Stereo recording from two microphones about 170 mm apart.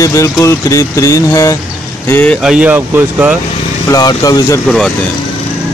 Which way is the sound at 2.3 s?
5° right (ahead or behind).